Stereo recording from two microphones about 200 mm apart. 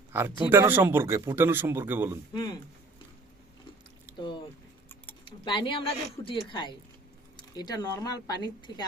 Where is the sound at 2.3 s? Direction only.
20° left (ahead or behind).